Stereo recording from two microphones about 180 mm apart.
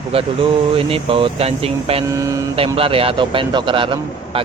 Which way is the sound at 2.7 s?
30° right (ahead or behind).